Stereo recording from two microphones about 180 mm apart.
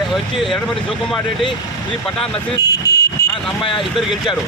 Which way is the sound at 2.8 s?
20° left (ahead or behind).